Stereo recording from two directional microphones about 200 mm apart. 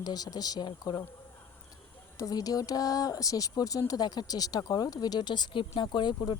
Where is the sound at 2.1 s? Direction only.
15° left (ahead or behind).